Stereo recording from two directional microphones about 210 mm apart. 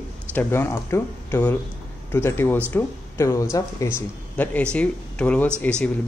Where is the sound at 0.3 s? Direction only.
10° left (ahead or behind).